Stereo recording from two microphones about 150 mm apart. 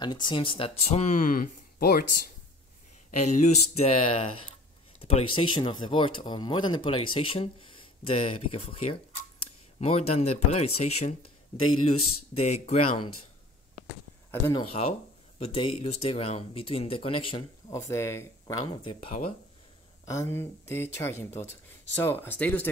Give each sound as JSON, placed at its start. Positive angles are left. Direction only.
{"t": 0.0, "sound": "speech", "side_deg": 30}
{"t": 3.1, "sound": "speech", "side_deg": 50}
{"t": 14.5, "sound": "speech", "side_deg": 40}
{"t": 17.6, "sound": "speech", "side_deg": 20}
{"t": 18.9, "sound": "speech", "side_deg": 45}
{"t": 20.1, "sound": "speech", "side_deg": 20}